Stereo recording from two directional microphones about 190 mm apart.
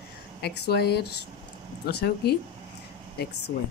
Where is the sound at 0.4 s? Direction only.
60° left (ahead or behind).